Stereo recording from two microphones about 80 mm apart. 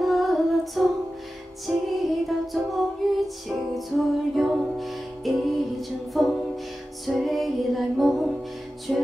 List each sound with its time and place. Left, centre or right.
0.0 s female singing: centre
1.7 s music: centre